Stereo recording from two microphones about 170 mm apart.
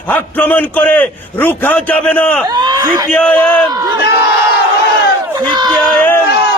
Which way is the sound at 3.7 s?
20° right (ahead or behind).